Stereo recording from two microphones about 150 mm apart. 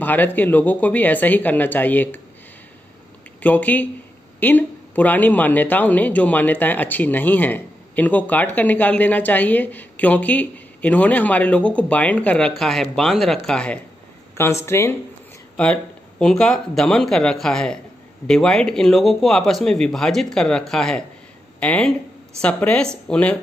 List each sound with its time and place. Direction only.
0.0 s a woman's voice: 10° left (ahead or behind)
3.3 s a woman's voice: 10° left (ahead or behind)
14.3 s a woman's voice: 15° left (ahead or behind)
15.5 s a woman's voice: 5° left (ahead or behind)